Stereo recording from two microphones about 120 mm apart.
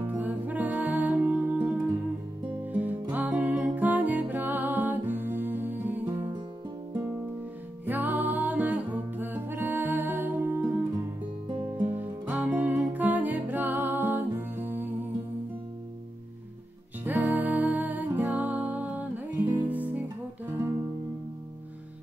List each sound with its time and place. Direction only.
0.0 s music: 15° right (ahead or behind)
12.0 s music: 15° right (ahead or behind)
17.0 s music: 15° right (ahead or behind)